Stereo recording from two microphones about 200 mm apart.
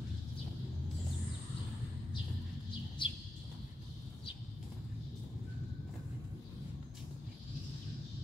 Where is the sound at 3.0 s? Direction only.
25° left (ahead or behind).